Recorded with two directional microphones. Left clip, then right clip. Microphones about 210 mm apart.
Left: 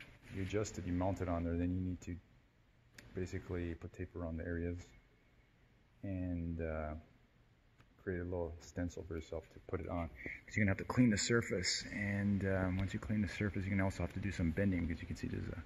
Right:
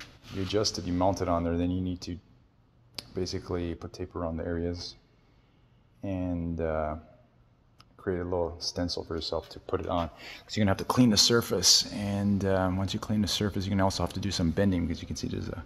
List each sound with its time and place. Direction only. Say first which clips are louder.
0.5 s speech: right 12 dB; centre (ahead or behind)
3.2 s speech: right 10 dB; 5° right (ahead or behind)
6.0 s speech: right 10 dB; 10° right (ahead or behind)
8.0 s speech: right 11 dB; 10° right (ahead or behind)
11.9 s speech: right 6 dB; 15° right (ahead or behind)
12.2 s speech: right 13 dB; 5° right (ahead or behind)